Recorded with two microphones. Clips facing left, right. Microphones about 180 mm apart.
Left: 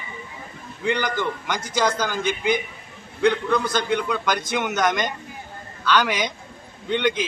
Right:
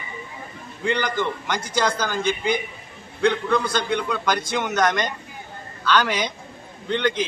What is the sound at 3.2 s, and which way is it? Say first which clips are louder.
Speech: even; 15° left (ahead or behind).